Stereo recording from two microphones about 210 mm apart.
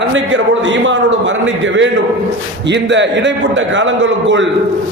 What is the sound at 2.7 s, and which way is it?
A man's voice, 60° right (ahead or behind).